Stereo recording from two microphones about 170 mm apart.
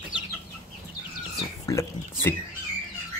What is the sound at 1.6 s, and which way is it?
Speech, 15° left (ahead or behind).